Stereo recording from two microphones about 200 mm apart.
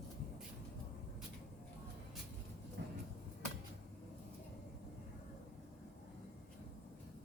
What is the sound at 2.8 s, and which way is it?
Vehicle, 55° right (ahead or behind).